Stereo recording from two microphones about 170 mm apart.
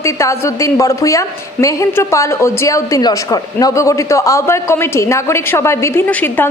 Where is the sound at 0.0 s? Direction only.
20° left (ahead or behind).